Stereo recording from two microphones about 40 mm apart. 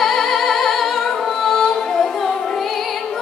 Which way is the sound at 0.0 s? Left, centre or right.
Centre.